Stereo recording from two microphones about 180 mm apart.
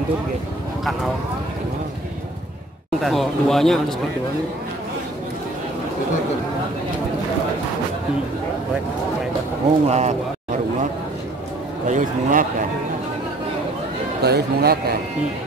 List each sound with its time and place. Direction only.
3.0 s speech: centre (ahead or behind)
9.8 s speech: 40° right (ahead or behind)
11.9 s a man's voice: 45° right (ahead or behind)
14.2 s speech: 60° right (ahead or behind)